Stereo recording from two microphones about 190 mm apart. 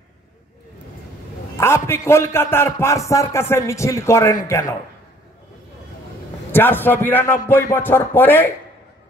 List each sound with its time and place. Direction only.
1.6 s a man's voice: 15° left (ahead or behind)
6.5 s a man's voice: 10° left (ahead or behind)